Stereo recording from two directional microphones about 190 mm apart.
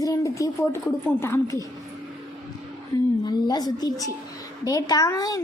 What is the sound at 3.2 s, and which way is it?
A woman's voice, 20° left (ahead or behind).